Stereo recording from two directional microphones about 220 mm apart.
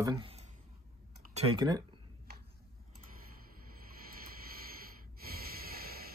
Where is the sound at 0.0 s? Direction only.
20° right (ahead or behind).